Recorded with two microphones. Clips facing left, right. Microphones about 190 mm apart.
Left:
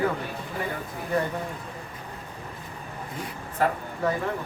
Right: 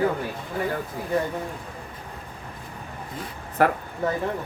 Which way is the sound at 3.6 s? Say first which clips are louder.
Right 4 dB; 70° right (ahead or behind).